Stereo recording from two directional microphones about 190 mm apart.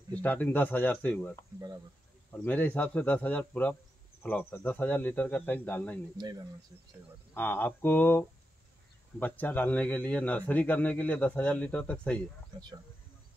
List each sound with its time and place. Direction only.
0.1 s a man's voice: 10° left (ahead or behind)
6.1 s speech: 20° right (ahead or behind)
7.3 s a man's voice: 10° left (ahead or behind)